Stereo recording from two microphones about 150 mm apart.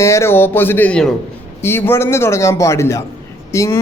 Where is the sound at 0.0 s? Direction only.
20° left (ahead or behind).